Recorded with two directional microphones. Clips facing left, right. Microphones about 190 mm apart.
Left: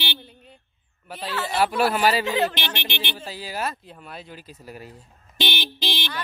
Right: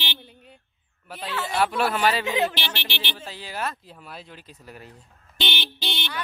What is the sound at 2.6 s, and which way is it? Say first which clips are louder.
Speech: left 2 dB; 15° left (ahead or behind).